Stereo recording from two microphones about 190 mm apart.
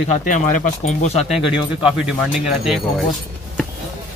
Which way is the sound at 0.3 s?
45° left (ahead or behind).